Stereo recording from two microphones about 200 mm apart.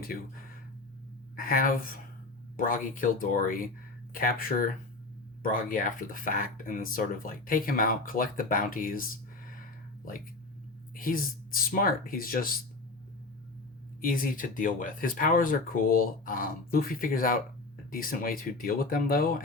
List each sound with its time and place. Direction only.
1.4 s speech: 45° left (ahead or behind)
10.9 s speech: 45° left (ahead or behind)
14.0 s speech: 45° left (ahead or behind)